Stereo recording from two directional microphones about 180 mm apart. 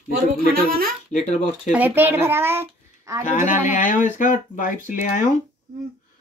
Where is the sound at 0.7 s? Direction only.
55° right (ahead or behind).